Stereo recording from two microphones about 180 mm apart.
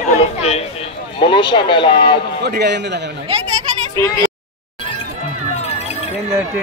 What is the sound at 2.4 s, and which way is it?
Speech, 65° right (ahead or behind).